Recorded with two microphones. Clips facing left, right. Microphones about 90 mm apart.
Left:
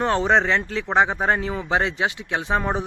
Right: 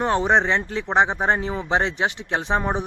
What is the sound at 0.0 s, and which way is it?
Speech, 20° right (ahead or behind).